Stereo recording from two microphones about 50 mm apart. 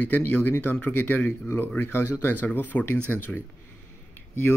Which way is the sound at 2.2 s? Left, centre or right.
Left.